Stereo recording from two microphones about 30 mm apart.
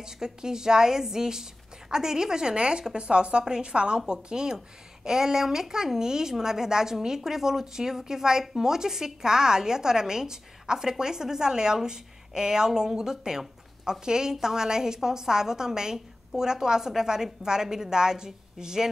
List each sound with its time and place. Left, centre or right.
0.0 s a woman's voice: right